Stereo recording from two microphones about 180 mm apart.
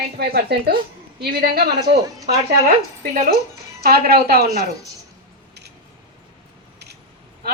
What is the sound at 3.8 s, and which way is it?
Speech, 60° right (ahead or behind).